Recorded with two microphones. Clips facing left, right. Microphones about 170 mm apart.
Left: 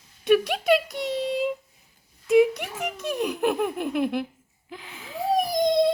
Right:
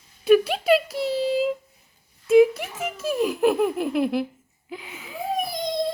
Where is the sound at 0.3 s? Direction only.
Centre (ahead or behind).